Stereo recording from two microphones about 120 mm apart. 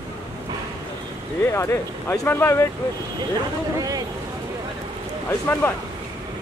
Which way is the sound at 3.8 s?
30° right (ahead or behind).